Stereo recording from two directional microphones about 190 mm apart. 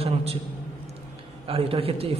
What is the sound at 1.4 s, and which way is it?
Speech, 30° right (ahead or behind).